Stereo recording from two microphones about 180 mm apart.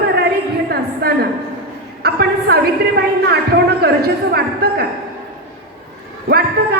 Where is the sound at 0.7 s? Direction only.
60° right (ahead or behind).